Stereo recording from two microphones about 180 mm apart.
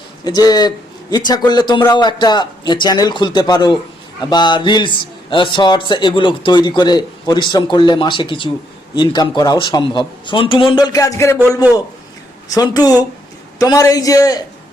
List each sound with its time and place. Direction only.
0.3 s a man's voice: 20° left (ahead or behind)
12.5 s a man's voice: 20° left (ahead or behind)